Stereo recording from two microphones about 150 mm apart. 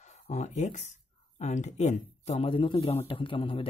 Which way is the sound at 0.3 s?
50° left (ahead or behind).